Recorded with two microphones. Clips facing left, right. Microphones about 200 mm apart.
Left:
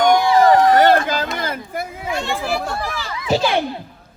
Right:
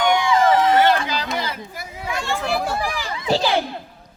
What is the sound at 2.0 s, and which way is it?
Chatter, 25° left (ahead or behind).